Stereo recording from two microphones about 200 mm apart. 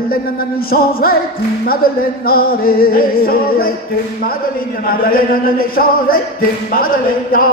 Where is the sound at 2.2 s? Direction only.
45° left (ahead or behind).